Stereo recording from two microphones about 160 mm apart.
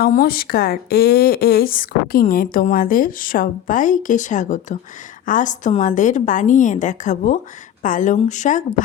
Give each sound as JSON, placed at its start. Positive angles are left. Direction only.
{"t": 0.0, "sound": "a woman's voice", "side_deg": 70}